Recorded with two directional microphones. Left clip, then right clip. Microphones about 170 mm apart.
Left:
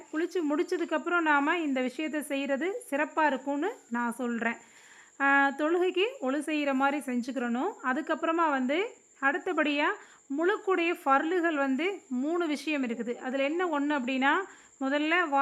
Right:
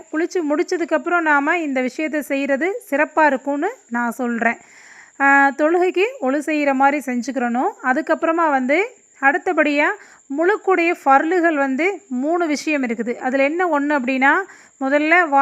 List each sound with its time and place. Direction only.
0.1 s speech: 25° right (ahead or behind)
12.1 s speech: 15° right (ahead or behind)
12.4 s speech: 30° right (ahead or behind)